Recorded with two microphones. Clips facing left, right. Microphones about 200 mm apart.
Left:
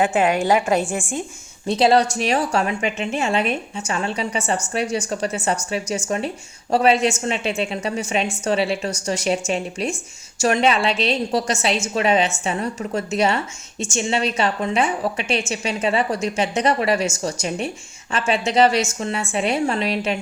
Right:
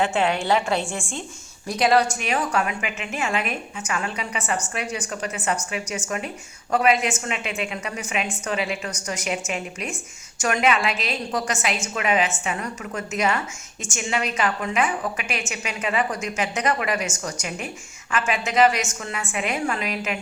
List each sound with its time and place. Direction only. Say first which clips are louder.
0.0 s a woman's voice: left 4 dB; 15° left (ahead or behind)
1.6 s a woman's voice: left 3 dB; 25° left (ahead or behind)